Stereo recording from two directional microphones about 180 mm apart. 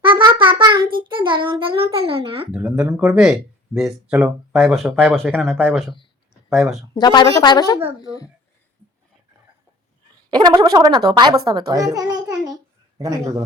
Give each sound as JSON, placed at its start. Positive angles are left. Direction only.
{"t": 0.0, "sound": "child singing", "side_deg": -25}
{"t": 2.5, "sound": "a child's voice", "side_deg": -10}
{"t": 6.9, "sound": "a woman's voice", "side_deg": 25}
{"t": 7.8, "sound": "a child's voice", "side_deg": -15}
{"t": 10.2, "sound": "a child's voice", "side_deg": -25}